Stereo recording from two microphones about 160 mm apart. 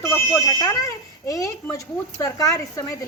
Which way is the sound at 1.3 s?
20° left (ahead or behind).